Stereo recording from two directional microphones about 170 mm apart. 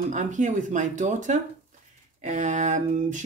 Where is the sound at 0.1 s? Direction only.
45° right (ahead or behind).